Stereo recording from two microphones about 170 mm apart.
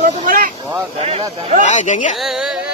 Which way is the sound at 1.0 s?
35° right (ahead or behind).